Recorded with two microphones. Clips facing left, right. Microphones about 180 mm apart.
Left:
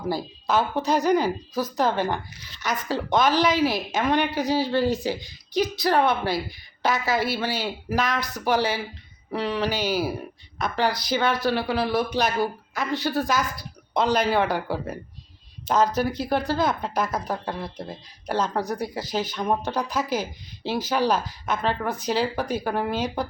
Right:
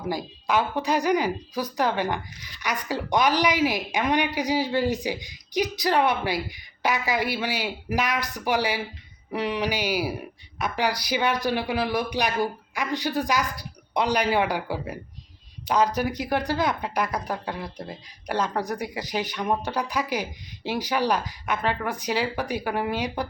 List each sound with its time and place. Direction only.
0.1 s speech: 15° right (ahead or behind)
17.2 s speech: 40° left (ahead or behind)
17.7 s speech: 15° right (ahead or behind)
18.3 s speech: 40° left (ahead or behind)
18.8 s speech: 15° right (ahead or behind)